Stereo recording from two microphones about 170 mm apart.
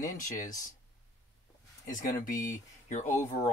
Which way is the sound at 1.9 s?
50° left (ahead or behind).